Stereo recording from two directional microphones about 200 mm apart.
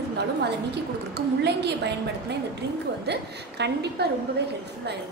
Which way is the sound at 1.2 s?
55° right (ahead or behind).